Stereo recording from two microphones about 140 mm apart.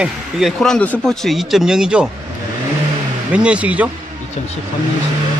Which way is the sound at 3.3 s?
10° right (ahead or behind).